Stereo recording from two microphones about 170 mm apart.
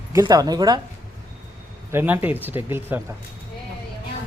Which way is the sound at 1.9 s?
10° right (ahead or behind).